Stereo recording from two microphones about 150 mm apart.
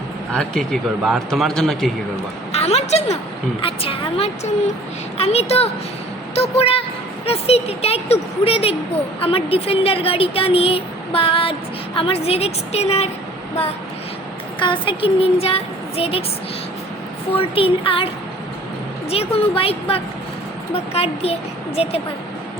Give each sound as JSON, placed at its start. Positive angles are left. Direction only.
{"t": 0.3, "sound": "a man's voice", "side_deg": 5}
{"t": 2.5, "sound": "a woman's voice", "side_deg": 45}
{"t": 14.6, "sound": "speech", "side_deg": 35}
{"t": 17.3, "sound": "speech", "side_deg": 40}
{"t": 19.1, "sound": "speech", "side_deg": 40}